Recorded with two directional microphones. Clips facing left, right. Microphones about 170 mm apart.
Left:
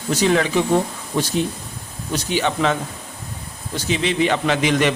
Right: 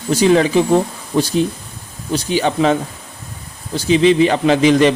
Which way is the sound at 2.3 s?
35° right (ahead or behind).